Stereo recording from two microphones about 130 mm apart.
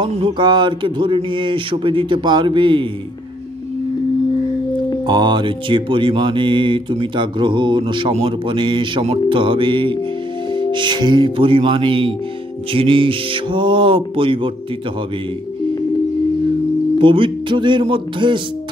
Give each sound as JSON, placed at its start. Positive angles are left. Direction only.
{"t": 0.4, "sound": "mantra", "side_deg": -35}
{"t": 5.0, "sound": "mantra", "side_deg": -35}
{"t": 17.0, "sound": "mantra", "side_deg": -40}